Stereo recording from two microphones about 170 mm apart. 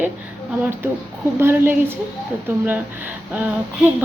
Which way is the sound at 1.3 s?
15° right (ahead or behind).